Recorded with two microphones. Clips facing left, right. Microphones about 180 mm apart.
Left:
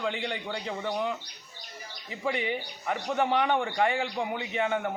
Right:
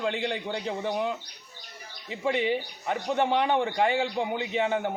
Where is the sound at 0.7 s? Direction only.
25° right (ahead or behind).